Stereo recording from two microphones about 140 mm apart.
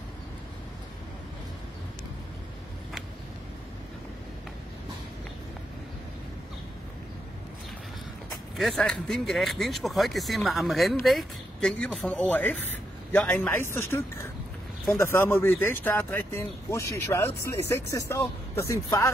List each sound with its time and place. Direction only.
8.5 s speech: 5° left (ahead or behind)
12.3 s speech: 15° left (ahead or behind)